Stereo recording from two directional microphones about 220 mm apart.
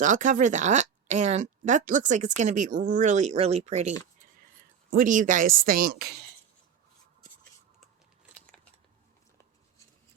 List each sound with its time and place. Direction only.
0.0 s speech: 35° right (ahead or behind)
4.9 s speech: 35° right (ahead or behind)
8.4 s biting: 5° left (ahead or behind)